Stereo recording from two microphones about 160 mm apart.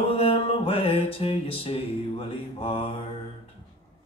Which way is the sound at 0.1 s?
40° left (ahead or behind).